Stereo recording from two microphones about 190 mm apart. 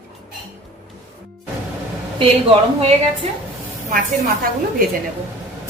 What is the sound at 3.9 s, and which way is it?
Speech, 50° right (ahead or behind).